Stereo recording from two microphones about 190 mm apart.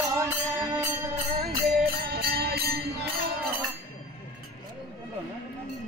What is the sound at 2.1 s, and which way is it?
Music, 55° right (ahead or behind).